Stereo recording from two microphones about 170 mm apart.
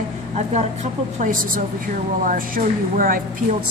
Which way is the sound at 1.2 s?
50° right (ahead or behind).